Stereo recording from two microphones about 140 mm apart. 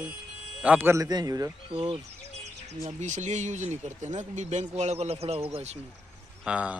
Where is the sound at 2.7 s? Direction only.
55° right (ahead or behind).